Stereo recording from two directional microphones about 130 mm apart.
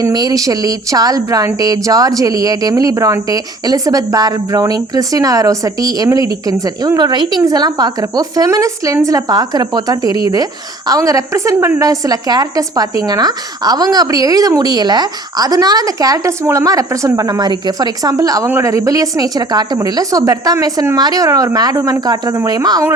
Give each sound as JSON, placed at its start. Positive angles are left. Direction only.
{"t": 0.0, "sound": "a woman's voice", "side_deg": -30}